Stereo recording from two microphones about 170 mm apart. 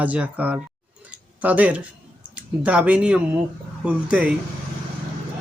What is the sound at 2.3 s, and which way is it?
Speech, 5° right (ahead or behind).